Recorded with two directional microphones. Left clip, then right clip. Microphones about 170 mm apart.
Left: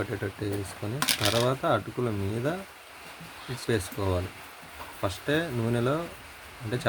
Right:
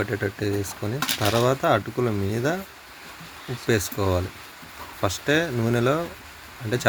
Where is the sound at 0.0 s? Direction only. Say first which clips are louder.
Right 6 dB; 25° right (ahead or behind).